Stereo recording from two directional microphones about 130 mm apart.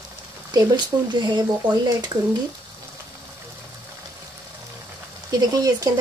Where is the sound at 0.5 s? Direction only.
35° right (ahead or behind).